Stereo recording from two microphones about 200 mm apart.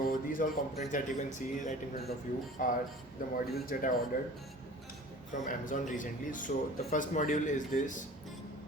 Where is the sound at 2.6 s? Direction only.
40° left (ahead or behind).